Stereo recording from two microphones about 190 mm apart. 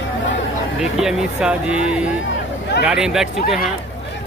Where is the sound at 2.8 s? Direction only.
5° right (ahead or behind).